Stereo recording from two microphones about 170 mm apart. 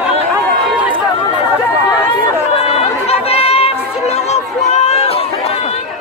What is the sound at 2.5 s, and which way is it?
Chatter, 35° left (ahead or behind).